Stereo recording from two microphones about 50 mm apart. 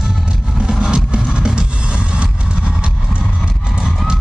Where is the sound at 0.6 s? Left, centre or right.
Centre.